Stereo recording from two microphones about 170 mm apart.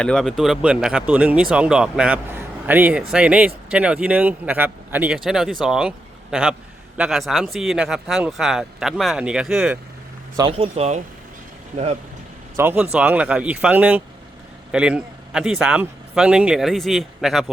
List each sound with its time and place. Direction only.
0.0 s a man's voice: 5° left (ahead or behind)
10.5 s speech: 35° right (ahead or behind)
12.5 s a man's voice: 10° right (ahead or behind)